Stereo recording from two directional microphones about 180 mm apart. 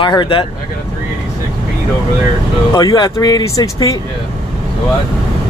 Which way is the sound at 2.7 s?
20° left (ahead or behind).